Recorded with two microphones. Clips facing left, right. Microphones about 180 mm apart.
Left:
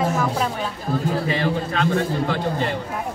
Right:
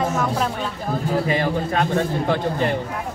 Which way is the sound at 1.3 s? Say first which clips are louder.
Right 2 dB; 45° right (ahead or behind).